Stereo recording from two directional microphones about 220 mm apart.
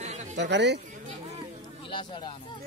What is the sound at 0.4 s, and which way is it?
Speech, 50° right (ahead or behind).